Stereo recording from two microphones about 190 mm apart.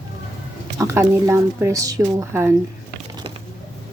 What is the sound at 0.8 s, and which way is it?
Speech, 15° right (ahead or behind).